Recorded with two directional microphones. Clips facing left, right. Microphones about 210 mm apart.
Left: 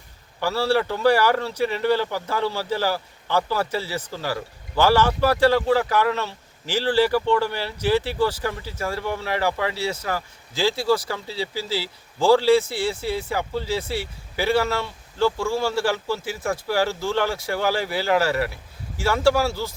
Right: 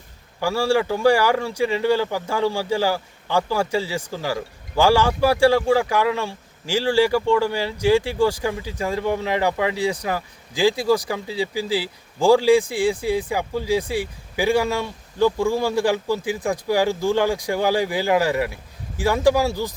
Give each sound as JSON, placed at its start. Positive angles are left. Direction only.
{"t": 0.3, "sound": "speech", "side_deg": -10}